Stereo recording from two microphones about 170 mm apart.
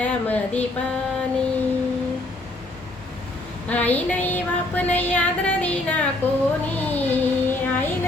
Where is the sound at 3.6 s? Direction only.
10° left (ahead or behind).